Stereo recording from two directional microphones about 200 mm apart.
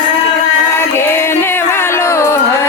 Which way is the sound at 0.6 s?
10° left (ahead or behind).